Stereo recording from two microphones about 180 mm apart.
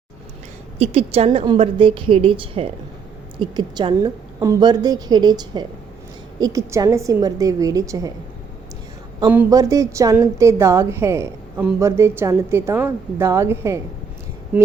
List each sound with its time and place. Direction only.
0.8 s a woman's voice: 35° right (ahead or behind); by 8.1 s 20° right (ahead or behind)
9.5 s a woman's voice: 20° right (ahead or behind)